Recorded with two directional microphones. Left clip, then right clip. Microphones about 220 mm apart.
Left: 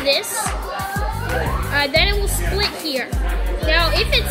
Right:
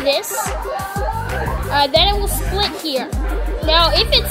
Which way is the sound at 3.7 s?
20° right (ahead or behind).